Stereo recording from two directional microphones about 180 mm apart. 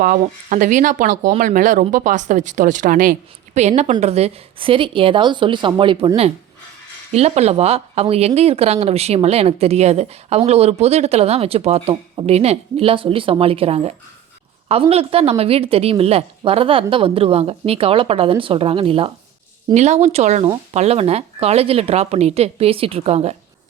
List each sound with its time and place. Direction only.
0.0 s a woman's voice: 50° right (ahead or behind)